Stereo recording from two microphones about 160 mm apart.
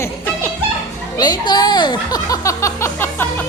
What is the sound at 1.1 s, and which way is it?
Speech, 25° left (ahead or behind).